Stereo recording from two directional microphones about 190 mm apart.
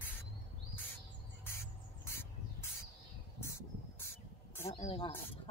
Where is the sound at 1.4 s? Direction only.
15° left (ahead or behind).